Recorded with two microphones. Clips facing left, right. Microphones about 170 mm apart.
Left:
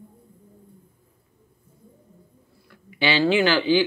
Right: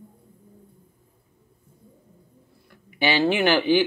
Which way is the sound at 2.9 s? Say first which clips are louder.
Even; 50° right (ahead or behind).